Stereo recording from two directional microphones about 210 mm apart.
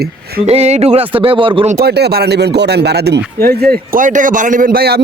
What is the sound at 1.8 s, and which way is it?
A man's voice, 50° right (ahead or behind).